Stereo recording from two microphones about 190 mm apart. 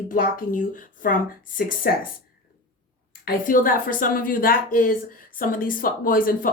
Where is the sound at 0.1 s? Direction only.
45° left (ahead or behind).